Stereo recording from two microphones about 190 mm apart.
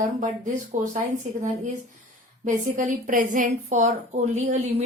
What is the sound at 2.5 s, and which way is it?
A woman's voice, 40° right (ahead or behind).